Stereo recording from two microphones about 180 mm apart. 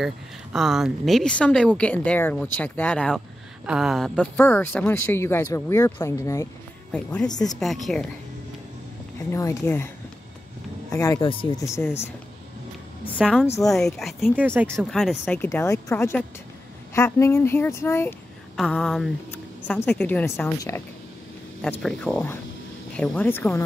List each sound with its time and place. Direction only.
0.0 s a woman's voice: centre (ahead or behind); by 6.5 s 15° left (ahead or behind)
6.9 s a woman's voice: 5° left (ahead or behind)
7.2 s speech: 20° left (ahead or behind)
7.6 s a woman's voice: centre (ahead or behind)
9.3 s speech: 15° left (ahead or behind)
10.9 s speech: 20° left (ahead or behind)
13.2 s a woman's voice: centre (ahead or behind)
14.9 s speech: centre (ahead or behind)
18.6 s a woman's voice: 5° left (ahead or behind)
21.5 s a woman's voice: centre (ahead or behind)